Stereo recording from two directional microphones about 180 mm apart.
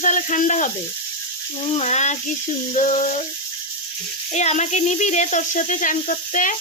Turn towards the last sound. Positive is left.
turn(degrees=45)  # may be behind; listen again after turning